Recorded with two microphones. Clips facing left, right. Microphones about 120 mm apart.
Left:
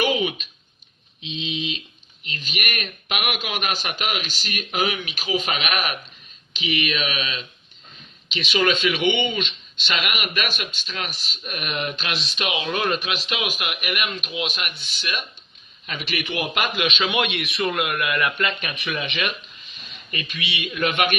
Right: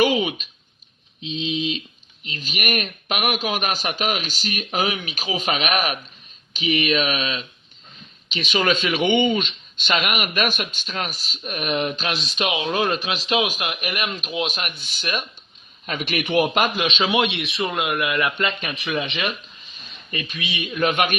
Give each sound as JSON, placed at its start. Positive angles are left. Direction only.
{"t": 1.2, "sound": "a man's voice", "side_deg": -40}